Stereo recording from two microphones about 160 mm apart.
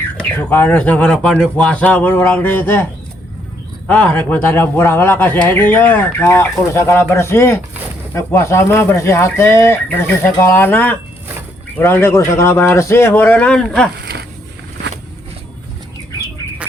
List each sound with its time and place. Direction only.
0.2 s speech: 15° left (ahead or behind)
3.8 s speech: 10° left (ahead or behind)
14.0 s dog: 90° right